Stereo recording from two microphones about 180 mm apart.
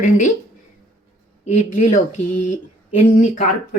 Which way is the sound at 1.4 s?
40° left (ahead or behind).